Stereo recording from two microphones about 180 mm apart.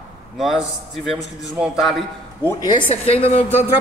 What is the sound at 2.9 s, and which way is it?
Speech, 35° left (ahead or behind).